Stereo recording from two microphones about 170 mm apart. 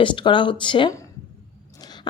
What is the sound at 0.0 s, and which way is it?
Speech, 30° left (ahead or behind).